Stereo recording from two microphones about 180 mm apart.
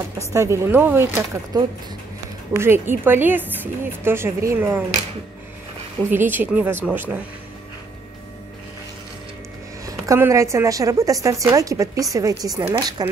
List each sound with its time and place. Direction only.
0.2 s a woman's voice: 15° right (ahead or behind)
6.1 s a woman's voice: 10° right (ahead or behind)
9.8 s a woman's voice: 15° right (ahead or behind)